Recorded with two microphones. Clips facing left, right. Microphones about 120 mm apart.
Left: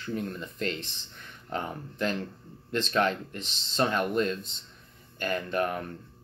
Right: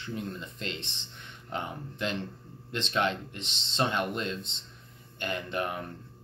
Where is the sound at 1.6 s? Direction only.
40° left (ahead or behind).